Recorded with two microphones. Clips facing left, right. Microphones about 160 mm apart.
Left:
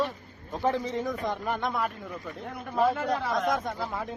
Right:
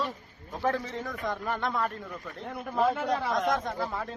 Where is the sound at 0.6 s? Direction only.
15° left (ahead or behind).